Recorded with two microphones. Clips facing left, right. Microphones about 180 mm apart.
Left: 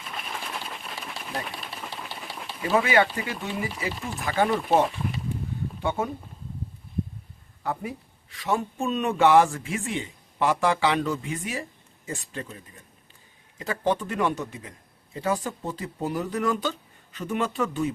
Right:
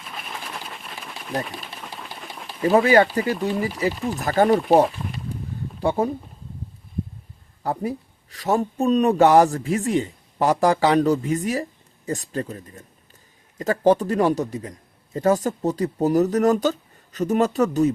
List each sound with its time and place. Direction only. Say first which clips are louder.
0.0 s a sound: even; centre (ahead or behind)
1.5 s typewriter: right 1 dB; centre (ahead or behind)
2.6 s speech: right 6 dB; 35° right (ahead or behind)
5.8 s speech: right 6 dB; 35° right (ahead or behind)
7.6 s speech: right 5 dB; 35° right (ahead or behind)